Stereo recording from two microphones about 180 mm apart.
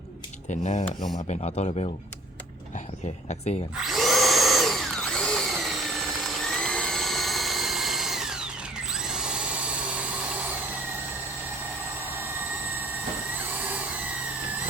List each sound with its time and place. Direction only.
0.5 s speech: 40° left (ahead or behind)
3.2 s speech: 35° left (ahead or behind)
3.8 s drill: centre (ahead or behind)
13.3 s vacuum cleaner: 10° right (ahead or behind)